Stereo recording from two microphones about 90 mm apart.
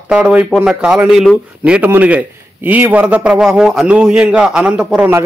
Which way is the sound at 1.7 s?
15° right (ahead or behind).